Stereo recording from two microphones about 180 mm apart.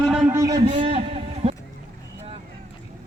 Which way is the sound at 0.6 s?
30° right (ahead or behind).